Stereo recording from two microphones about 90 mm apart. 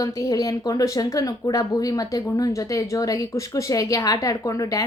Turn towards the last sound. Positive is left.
turn(degrees=40)  # may be behind; listen again after turning